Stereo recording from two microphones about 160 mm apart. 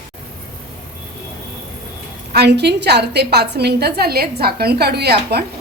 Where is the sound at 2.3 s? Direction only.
90° right.